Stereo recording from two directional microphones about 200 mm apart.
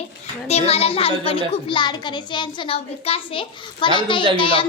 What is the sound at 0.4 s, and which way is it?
A child's voice, 30° left (ahead or behind).